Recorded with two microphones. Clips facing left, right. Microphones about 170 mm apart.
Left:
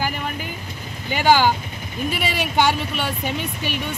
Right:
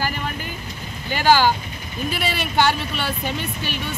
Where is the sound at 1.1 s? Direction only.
15° left (ahead or behind).